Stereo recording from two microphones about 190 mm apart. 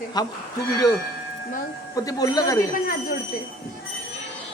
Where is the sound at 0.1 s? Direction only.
20° left (ahead or behind).